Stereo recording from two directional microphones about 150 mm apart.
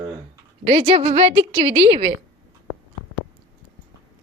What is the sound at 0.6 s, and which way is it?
Speech, 40° right (ahead or behind).